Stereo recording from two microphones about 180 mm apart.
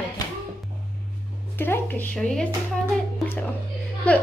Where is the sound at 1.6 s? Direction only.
10° left (ahead or behind).